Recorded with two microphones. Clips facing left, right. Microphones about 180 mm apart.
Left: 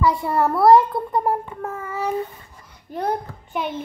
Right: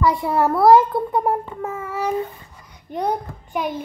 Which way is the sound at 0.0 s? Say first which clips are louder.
Right 1 dB; centre (ahead or behind).